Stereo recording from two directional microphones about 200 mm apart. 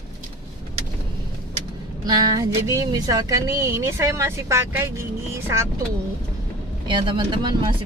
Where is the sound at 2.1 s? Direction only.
20° right (ahead or behind).